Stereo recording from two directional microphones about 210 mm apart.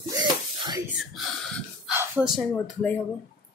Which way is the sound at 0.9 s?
Centre (ahead or behind).